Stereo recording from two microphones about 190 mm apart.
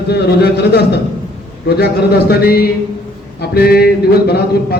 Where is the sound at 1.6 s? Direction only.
55° left (ahead or behind).